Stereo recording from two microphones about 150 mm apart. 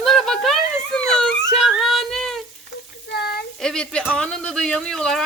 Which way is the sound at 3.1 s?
90° left.